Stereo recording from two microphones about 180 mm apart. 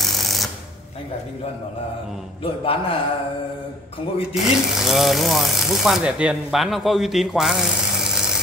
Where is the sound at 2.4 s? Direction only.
30° left (ahead or behind).